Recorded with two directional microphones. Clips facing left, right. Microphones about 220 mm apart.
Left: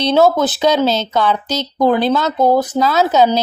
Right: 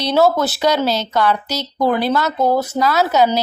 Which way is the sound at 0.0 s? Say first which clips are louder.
Left 2 dB; 20° left (ahead or behind).